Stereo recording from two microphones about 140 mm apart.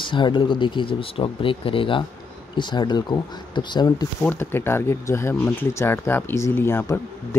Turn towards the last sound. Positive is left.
turn(degrees=15)  # may be behind; listen again after turning